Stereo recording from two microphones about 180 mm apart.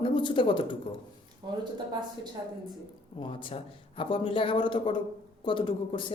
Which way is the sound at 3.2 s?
30° left (ahead or behind).